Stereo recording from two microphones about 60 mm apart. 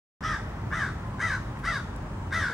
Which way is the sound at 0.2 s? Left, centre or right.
Centre.